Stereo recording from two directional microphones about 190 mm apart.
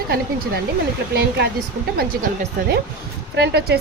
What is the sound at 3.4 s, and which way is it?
Speech, 60° right (ahead or behind).